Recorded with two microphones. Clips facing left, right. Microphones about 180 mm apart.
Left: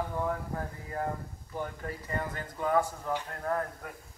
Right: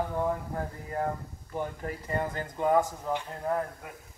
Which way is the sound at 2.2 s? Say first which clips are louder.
Right 5 dB; 25° right (ahead or behind).